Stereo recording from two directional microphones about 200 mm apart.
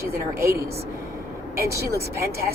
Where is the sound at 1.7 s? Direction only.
15° right (ahead or behind).